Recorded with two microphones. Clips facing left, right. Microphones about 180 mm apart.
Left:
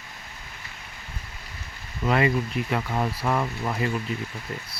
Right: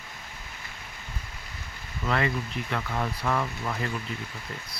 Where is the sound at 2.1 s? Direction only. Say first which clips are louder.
Left 5 dB; 15° left (ahead or behind).